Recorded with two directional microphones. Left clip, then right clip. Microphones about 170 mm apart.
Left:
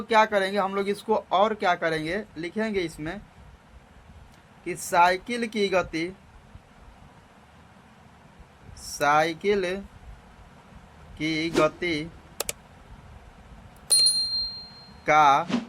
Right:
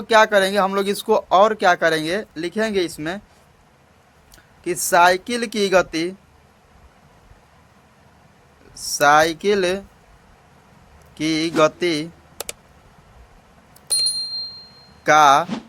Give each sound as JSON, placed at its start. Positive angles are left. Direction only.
{"t": 0.1, "sound": "speech", "side_deg": -55}
{"t": 4.6, "sound": "speech", "side_deg": -65}
{"t": 8.7, "sound": "speech", "side_deg": -65}
{"t": 11.2, "sound": "speech", "side_deg": -65}
{"t": 12.4, "sound": "a sound", "side_deg": 0}
{"t": 13.8, "sound": "wind chime", "side_deg": 0}
{"t": 15.0, "sound": "speech", "side_deg": -60}